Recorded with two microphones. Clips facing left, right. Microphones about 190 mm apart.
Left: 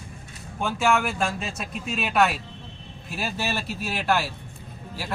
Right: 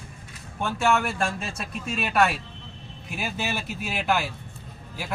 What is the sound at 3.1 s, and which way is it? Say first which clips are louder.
Speech: left 1 dB; 15° right (ahead or behind).